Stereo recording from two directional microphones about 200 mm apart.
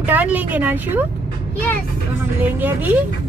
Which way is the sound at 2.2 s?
10° right (ahead or behind).